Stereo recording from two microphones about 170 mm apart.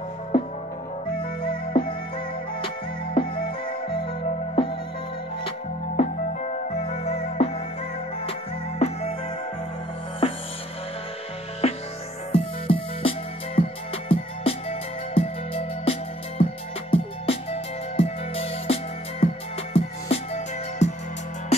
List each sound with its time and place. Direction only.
1.1 s music: 30° left (ahead or behind)
3.2 s music: 30° left (ahead or behind)
5.9 s music: 40° left (ahead or behind)
10.2 s music: 35° left (ahead or behind)
11.6 s music: 35° left (ahead or behind)